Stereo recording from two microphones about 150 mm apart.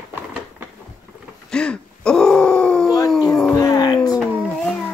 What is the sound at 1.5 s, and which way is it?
Groan, 5° left (ahead or behind).